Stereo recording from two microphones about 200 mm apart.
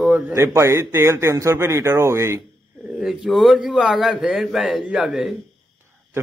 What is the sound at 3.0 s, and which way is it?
A man's voice, centre (ahead or behind).